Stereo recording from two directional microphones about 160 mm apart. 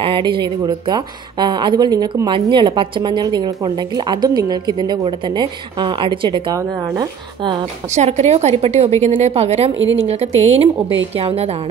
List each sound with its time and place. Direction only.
0.0 s a woman's voice: 30° right (ahead or behind)
7.9 s a woman's voice: 45° right (ahead or behind)